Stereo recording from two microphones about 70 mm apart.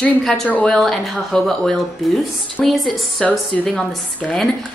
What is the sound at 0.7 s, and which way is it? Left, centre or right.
A woman's voice, centre.